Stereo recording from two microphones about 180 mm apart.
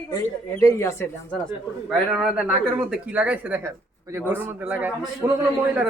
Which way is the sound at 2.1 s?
5° right (ahead or behind).